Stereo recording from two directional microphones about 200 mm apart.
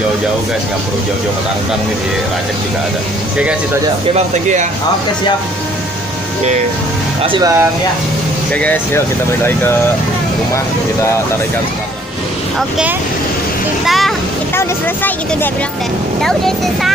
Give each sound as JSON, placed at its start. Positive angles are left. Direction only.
{"t": 4.3, "sound": "speech", "side_deg": -35}
{"t": 7.2, "sound": "speech", "side_deg": -20}
{"t": 8.5, "sound": "speech", "side_deg": 5}
{"t": 12.5, "sound": "speech", "side_deg": -5}
{"t": 14.5, "sound": "speech", "side_deg": 10}
{"t": 16.2, "sound": "speech", "side_deg": 0}